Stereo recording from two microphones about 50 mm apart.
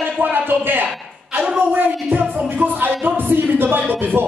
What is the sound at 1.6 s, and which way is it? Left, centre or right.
Music, right.